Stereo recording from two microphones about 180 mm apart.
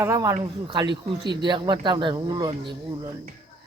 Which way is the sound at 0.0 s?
15° right (ahead or behind).